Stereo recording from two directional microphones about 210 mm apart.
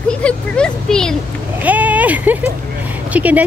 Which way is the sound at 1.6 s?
5° right (ahead or behind).